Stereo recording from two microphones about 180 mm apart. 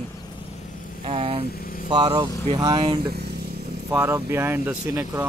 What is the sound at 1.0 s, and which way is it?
Speech, 30° right (ahead or behind).